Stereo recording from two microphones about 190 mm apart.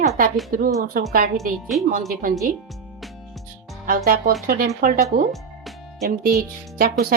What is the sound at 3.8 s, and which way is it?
A woman's voice, 45° right (ahead or behind).